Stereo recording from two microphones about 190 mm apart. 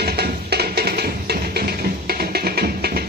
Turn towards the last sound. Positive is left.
turn(degrees=-55)  # may be behind; listen again after turning